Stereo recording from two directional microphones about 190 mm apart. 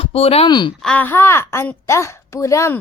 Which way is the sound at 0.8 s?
5° left (ahead or behind).